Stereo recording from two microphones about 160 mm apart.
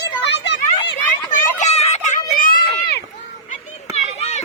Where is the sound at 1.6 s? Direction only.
45° left (ahead or behind); by 2.9 s 65° left (ahead or behind).